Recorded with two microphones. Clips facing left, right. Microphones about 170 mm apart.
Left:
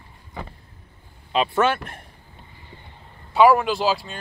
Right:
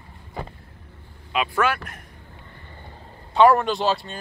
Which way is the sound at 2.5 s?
55° right (ahead or behind).